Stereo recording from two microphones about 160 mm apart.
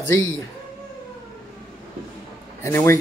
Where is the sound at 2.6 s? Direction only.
15° left (ahead or behind).